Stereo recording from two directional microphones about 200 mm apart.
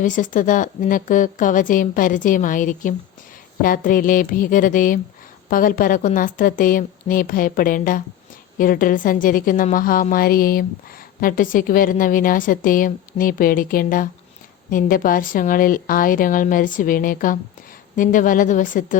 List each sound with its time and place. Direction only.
0.0 s a woman's voice: 40° left (ahead or behind)